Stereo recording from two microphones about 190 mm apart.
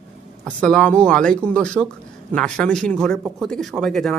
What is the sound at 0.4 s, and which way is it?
A man's voice, 5° left (ahead or behind).